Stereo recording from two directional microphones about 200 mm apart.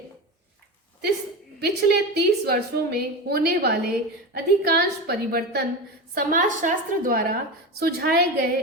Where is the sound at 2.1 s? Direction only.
55° right (ahead or behind).